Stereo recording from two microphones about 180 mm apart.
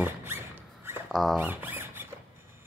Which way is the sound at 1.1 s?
Centre (ahead or behind).